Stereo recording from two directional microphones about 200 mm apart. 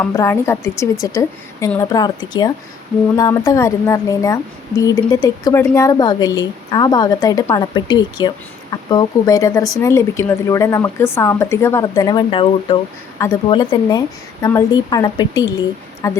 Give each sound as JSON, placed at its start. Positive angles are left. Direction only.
{"t": 0.0, "sound": "a woman's voice", "side_deg": 15}